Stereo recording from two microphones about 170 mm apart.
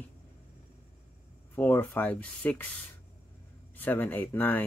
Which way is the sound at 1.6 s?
10° left (ahead or behind).